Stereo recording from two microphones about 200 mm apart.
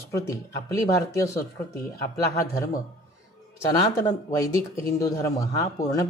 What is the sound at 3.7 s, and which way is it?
Speech, 15° left (ahead or behind).